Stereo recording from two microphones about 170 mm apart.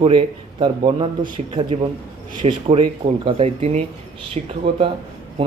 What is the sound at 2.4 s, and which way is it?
Speech, 35° right (ahead or behind).